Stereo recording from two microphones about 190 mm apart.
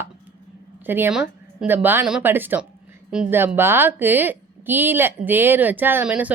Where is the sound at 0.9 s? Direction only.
10° right (ahead or behind).